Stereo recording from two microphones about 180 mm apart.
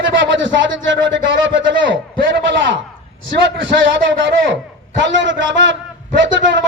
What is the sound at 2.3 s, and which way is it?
A man's voice, 90° right.